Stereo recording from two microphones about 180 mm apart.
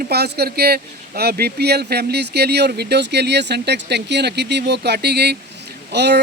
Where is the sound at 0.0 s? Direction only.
60° right (ahead or behind).